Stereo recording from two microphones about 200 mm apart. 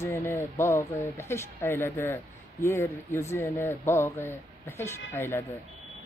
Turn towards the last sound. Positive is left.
turn(degrees=10)  # may be behind; listen again after turning